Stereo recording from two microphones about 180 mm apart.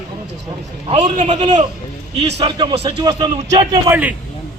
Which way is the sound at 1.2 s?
25° right (ahead or behind).